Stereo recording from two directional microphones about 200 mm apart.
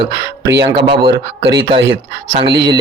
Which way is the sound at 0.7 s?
25° right (ahead or behind).